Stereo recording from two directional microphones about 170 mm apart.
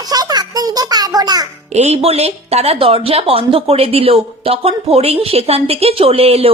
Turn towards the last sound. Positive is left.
turn(degrees=-35)  # may be behind; listen again after turning